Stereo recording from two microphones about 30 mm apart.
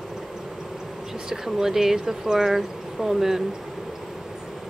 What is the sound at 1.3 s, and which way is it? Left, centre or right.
Speech, centre.